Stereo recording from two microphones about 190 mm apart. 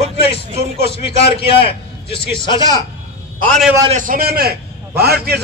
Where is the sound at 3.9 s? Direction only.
45° right (ahead or behind).